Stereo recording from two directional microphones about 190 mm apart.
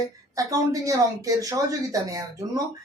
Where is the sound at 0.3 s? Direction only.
20° right (ahead or behind).